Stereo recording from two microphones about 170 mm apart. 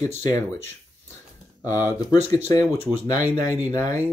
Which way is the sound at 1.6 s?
20° left (ahead or behind).